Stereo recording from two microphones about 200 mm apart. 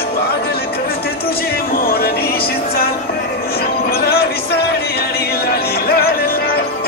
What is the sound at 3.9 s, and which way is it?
Music, 50° left (ahead or behind).